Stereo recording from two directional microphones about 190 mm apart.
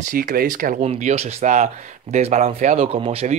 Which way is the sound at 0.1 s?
50° right (ahead or behind).